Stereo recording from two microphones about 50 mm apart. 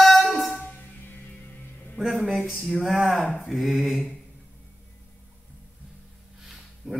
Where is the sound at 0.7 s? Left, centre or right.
Left.